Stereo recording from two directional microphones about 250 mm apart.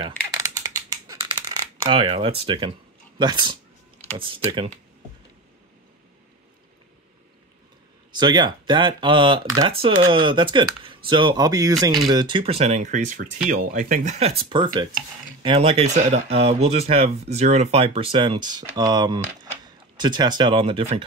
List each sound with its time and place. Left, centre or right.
0.4 s a sound: centre
3.2 s speech: centre
8.1 s speech: centre